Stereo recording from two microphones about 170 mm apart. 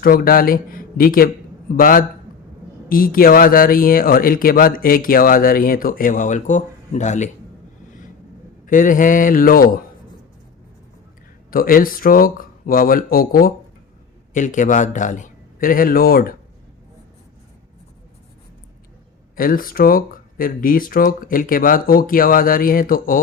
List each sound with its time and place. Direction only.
0.0 s speech: 60° left (ahead or behind); by 7.3 s 45° left (ahead or behind)
8.6 s a man's voice: 50° left (ahead or behind)
11.5 s a man's voice: 55° left (ahead or behind)
19.4 s speech: 55° left (ahead or behind)